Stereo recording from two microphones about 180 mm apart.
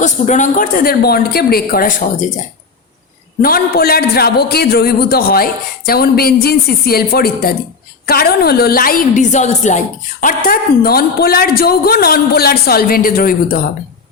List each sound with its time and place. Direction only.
0.0 s speech: 40° left (ahead or behind)
3.4 s a woman's voice: 55° left (ahead or behind)